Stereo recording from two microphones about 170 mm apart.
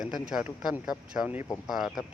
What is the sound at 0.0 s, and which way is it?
Speech, 5° right (ahead or behind).